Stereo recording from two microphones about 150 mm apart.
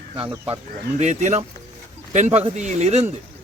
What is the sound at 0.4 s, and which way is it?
Speech, 45° right (ahead or behind).